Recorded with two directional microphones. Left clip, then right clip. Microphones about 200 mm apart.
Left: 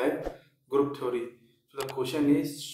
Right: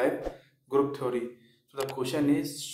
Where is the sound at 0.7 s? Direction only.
25° right (ahead or behind).